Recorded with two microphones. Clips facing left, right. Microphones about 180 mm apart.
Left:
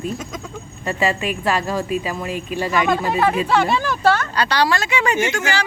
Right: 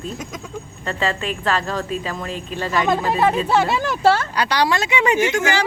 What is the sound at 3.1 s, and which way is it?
Speech, 25° right (ahead or behind).